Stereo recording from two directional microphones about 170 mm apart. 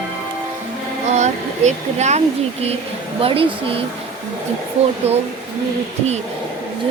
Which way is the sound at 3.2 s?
35° right (ahead or behind).